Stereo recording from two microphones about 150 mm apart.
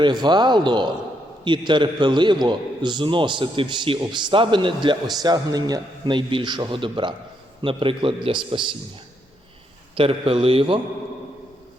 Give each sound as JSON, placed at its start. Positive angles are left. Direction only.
{"t": 0.0, "sound": "a man's voice", "side_deg": -30}
{"t": 9.9, "sound": "a man's voice", "side_deg": -35}